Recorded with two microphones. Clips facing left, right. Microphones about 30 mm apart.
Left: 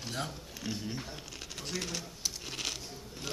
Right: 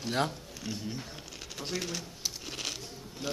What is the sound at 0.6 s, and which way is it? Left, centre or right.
Speech, centre.